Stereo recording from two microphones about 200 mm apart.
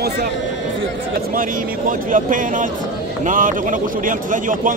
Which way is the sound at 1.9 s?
40° right (ahead or behind).